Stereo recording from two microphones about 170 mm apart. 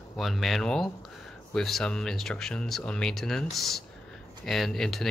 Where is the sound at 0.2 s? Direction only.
Centre (ahead or behind).